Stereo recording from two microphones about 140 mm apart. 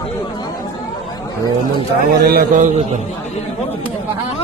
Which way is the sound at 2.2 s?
90° right.